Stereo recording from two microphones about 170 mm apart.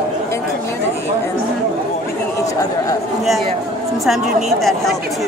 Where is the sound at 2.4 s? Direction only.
20° left (ahead or behind).